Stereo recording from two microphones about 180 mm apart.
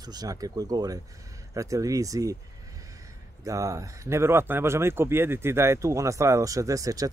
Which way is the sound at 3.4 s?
20° right (ahead or behind).